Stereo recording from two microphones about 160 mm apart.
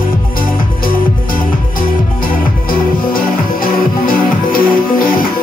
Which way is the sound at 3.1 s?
60° left (ahead or behind).